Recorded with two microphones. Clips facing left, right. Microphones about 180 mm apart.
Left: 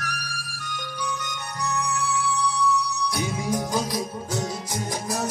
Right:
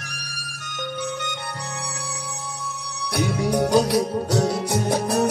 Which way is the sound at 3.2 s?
70° right (ahead or behind).